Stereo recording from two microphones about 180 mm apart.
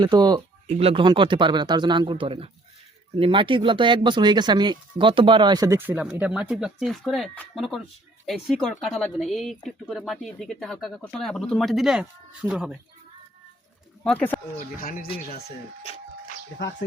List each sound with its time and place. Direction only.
0.0 s speech: 25° right (ahead or behind); by 12.7 s 5° right (ahead or behind)
14.0 s speech: 10° left (ahead or behind)
14.8 s speech: 50° left (ahead or behind)